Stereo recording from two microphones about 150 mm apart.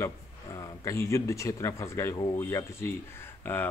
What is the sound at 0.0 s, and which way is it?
A man's voice, 20° left (ahead or behind).